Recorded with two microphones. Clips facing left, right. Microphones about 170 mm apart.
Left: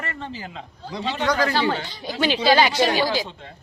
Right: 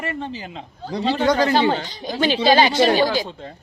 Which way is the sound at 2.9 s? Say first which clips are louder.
Right 4 dB; 40° right (ahead or behind).